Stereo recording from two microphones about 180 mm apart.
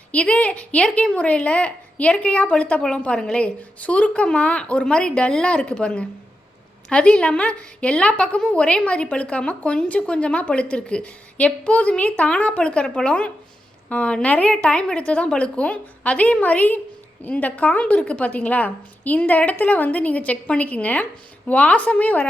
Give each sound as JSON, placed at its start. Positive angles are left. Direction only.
{"t": 0.1, "sound": "a woman's voice", "side_deg": 5}